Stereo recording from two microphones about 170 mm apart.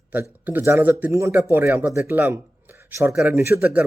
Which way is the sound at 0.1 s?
10° right (ahead or behind).